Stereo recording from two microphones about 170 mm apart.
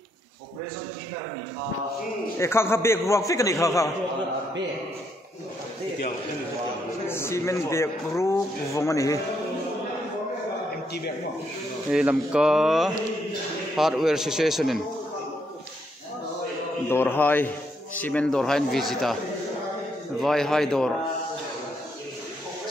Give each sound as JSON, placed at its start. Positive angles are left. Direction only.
{"t": 2.3, "sound": "a man's voice", "side_deg": 15}
{"t": 7.1, "sound": "a man's voice", "side_deg": 15}
{"t": 11.9, "sound": "a man's voice", "side_deg": -5}
{"t": 16.9, "sound": "a man's voice", "side_deg": 10}
{"t": 20.2, "sound": "a man's voice", "side_deg": 0}